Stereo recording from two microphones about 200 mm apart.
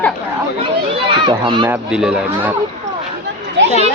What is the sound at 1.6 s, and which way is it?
Speech, 5° right (ahead or behind).